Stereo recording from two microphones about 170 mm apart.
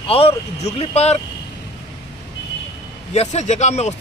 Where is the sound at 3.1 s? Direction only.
40° left (ahead or behind).